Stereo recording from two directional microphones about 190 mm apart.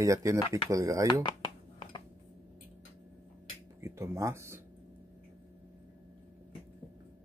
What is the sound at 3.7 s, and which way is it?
Speech, 15° right (ahead or behind).